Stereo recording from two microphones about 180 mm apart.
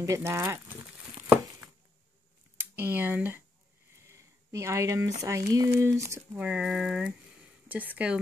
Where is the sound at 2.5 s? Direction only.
10° right (ahead or behind).